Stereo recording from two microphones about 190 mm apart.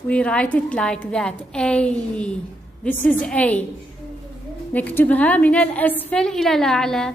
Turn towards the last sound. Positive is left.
turn(degrees=0)  # may be behind; listen again after turning